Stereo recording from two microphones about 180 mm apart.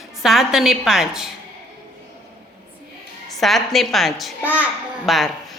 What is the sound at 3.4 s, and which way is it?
A woman's voice, centre (ahead or behind).